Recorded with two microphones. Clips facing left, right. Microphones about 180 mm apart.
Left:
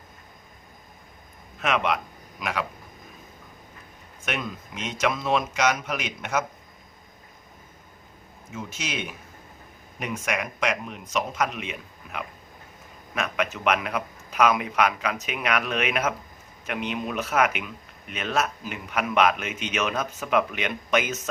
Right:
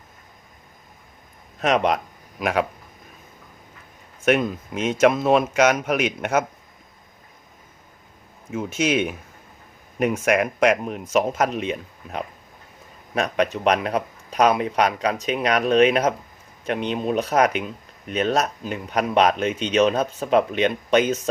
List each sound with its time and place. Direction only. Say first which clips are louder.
1.5 s a man's voice: right 5 dB; 40° right (ahead or behind)
4.3 s a man's voice: right 12 dB; 45° right (ahead or behind)
8.5 s a man's voice: right 11 dB; 55° right (ahead or behind); by 21.2 s 30° right (ahead or behind)